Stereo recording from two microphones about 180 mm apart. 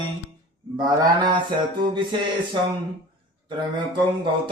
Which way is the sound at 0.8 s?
25° right (ahead or behind).